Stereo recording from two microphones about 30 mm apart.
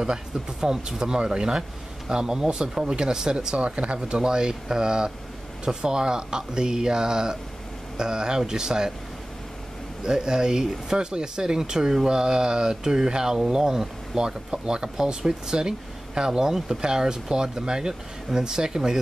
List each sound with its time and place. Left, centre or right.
0.0 s speech: right
3.5 s speech: right
4.2 s speech: right
10.0 s speech: right